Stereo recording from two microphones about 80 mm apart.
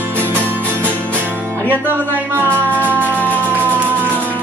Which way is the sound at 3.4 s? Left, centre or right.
Right.